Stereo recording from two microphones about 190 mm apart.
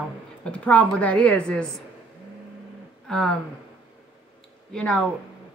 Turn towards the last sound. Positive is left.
turn(degrees=5)  # may be behind; listen again after turning